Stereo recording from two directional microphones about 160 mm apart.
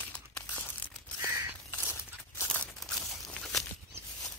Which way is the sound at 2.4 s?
5° left (ahead or behind).